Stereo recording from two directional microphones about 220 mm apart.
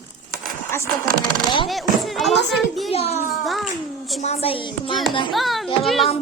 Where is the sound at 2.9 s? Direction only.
25° left (ahead or behind).